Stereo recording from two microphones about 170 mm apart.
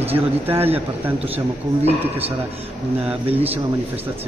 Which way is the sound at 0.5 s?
35° right (ahead or behind).